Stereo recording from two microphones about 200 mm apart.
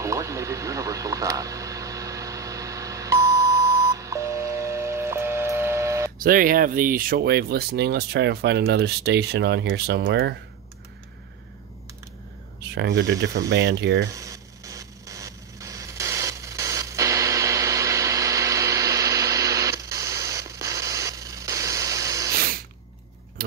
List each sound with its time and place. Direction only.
0.0 s radio: 15° right (ahead or behind)
6.1 s speech: 45° right (ahead or behind)
12.7 s speech: 60° right (ahead or behind)
14.0 s a sound: 15° right (ahead or behind)